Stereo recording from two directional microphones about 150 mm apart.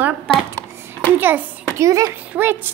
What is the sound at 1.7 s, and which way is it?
Speech, 20° right (ahead or behind).